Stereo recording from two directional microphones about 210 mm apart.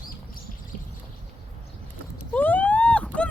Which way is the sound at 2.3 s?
10° left (ahead or behind).